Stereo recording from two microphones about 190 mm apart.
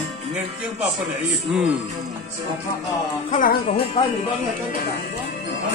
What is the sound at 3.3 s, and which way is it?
Music, 45° left (ahead or behind).